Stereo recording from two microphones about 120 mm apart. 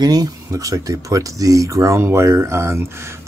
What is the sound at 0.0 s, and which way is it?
Speech, 35° right (ahead or behind).